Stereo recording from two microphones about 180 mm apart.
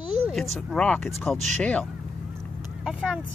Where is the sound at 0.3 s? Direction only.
Centre (ahead or behind).